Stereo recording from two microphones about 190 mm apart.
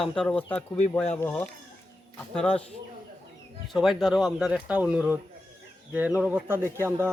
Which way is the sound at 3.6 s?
Centre (ahead or behind).